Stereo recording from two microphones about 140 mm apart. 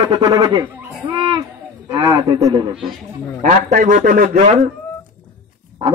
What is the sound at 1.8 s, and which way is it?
Speech, 30° right (ahead or behind).